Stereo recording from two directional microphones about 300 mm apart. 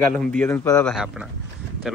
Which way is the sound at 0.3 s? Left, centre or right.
Centre.